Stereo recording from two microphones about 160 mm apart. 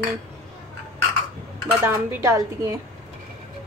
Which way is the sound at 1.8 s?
20° right (ahead or behind).